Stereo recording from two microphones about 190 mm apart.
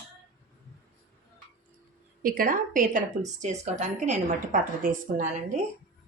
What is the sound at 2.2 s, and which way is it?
A woman's voice, 50° right (ahead or behind).